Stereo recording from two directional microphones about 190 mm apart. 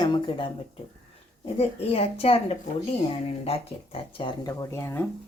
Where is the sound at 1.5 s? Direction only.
30° left (ahead or behind); by 5.0 s 15° left (ahead or behind).